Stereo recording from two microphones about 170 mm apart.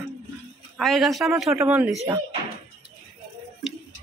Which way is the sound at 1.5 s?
15° right (ahead or behind).